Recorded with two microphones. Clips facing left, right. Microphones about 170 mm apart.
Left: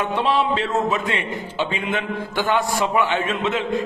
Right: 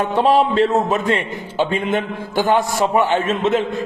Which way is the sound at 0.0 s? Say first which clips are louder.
Right 5 dB; 45° right (ahead or behind).